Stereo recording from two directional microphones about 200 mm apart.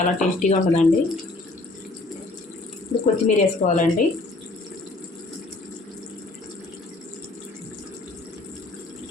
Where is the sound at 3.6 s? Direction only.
40° left (ahead or behind).